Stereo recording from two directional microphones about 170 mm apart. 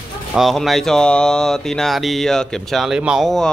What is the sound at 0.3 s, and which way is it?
A man's voice, centre (ahead or behind).